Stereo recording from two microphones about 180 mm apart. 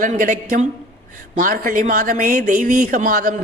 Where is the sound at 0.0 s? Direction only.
45° right (ahead or behind).